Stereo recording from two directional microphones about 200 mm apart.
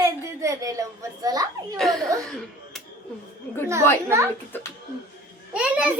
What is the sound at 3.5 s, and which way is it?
Chatter, 10° left (ahead or behind).